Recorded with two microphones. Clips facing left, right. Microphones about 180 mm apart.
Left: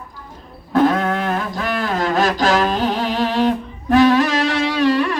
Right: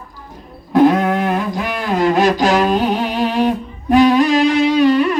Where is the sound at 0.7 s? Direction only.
15° right (ahead or behind).